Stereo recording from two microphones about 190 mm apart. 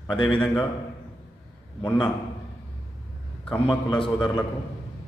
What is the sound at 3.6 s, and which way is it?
Speech, 25° left (ahead or behind).